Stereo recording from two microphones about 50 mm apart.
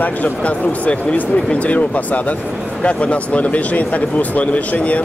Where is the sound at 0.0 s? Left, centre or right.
Left.